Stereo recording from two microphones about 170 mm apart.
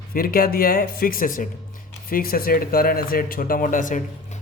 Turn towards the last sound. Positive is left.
turn(degrees=50)  # may be behind; listen again after turning